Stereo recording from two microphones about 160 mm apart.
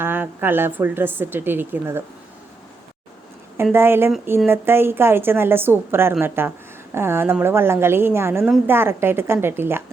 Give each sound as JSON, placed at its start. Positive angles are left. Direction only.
{"t": 0.0, "sound": "a woman's voice", "side_deg": -15}
{"t": 3.6, "sound": "a woman's voice", "side_deg": -15}